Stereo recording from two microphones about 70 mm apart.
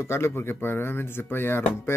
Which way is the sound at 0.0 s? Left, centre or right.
Left.